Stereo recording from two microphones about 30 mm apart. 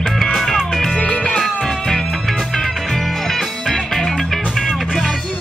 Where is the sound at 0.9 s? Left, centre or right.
Left.